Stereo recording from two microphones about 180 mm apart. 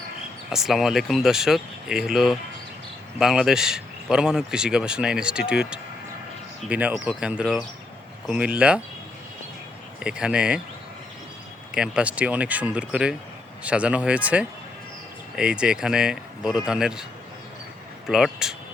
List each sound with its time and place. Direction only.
0.5 s a man's voice: centre (ahead or behind)
10.0 s a man's voice: 5° right (ahead or behind)
11.7 s a man's voice: 5° right (ahead or behind)